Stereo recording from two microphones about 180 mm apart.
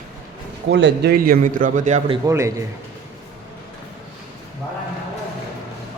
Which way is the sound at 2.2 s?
15° right (ahead or behind).